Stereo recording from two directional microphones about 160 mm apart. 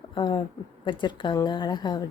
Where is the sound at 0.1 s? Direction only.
30° left (ahead or behind).